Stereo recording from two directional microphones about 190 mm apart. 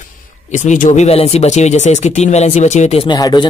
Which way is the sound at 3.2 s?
20° left (ahead or behind).